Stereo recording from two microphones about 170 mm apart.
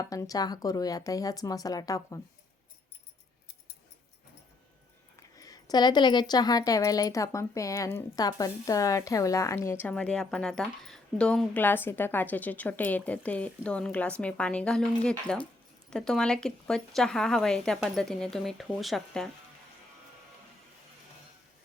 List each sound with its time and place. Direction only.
0.0 s speech: 20° left (ahead or behind)
5.4 s a woman's voice: 20° left (ahead or behind); by 19.3 s centre (ahead or behind)